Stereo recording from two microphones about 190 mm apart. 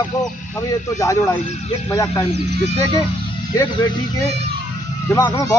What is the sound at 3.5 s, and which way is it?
Speech, 20° left (ahead or behind).